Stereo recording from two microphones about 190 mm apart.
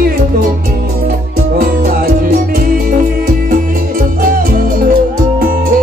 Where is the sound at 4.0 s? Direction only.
50° right (ahead or behind).